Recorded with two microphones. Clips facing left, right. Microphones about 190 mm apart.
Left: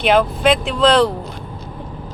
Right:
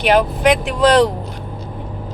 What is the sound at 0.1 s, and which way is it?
Speech, 15° right (ahead or behind).